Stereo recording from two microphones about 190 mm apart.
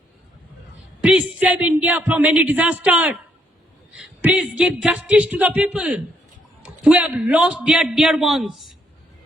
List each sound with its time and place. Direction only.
1.0 s a woman's voice: 5° right (ahead or behind)